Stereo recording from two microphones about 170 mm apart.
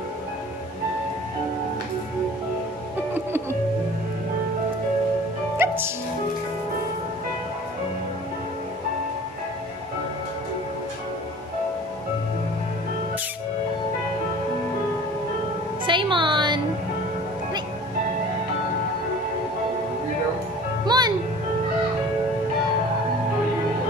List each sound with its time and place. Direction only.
5.6 s music: 15° right (ahead or behind)
15.8 s music: 30° right (ahead or behind)
20.8 s music: 25° right (ahead or behind)